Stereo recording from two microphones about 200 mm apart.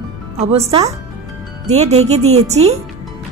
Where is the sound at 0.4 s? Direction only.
30° right (ahead or behind).